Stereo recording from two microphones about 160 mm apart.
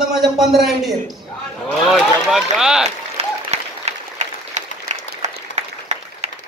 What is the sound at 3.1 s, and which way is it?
Applause, 40° right (ahead or behind).